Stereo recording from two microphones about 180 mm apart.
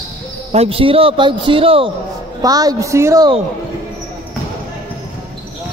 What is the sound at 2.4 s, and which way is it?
Speech, 20° right (ahead or behind).